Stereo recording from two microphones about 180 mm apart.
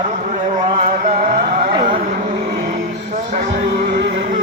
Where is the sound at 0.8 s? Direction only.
50° right (ahead or behind).